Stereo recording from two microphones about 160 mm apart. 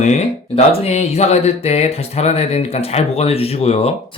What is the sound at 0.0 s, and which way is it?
Speech, 40° left (ahead or behind).